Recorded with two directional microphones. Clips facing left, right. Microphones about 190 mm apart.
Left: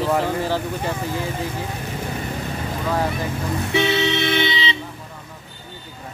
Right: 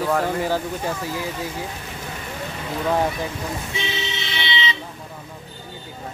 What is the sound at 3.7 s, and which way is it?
Vehicle, 65° left (ahead or behind).